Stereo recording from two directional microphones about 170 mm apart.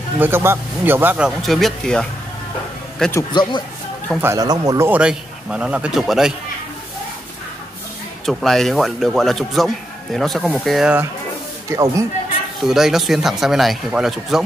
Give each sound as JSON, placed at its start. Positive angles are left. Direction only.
{"t": 0.2, "sound": "a man's voice", "side_deg": -15}
{"t": 3.1, "sound": "speech", "side_deg": 20}
{"t": 4.2, "sound": "a man's voice", "side_deg": -20}
{"t": 8.3, "sound": "speech", "side_deg": 0}
{"t": 11.7, "sound": "a man's voice", "side_deg": -15}
{"t": 12.5, "sound": "speech", "side_deg": 0}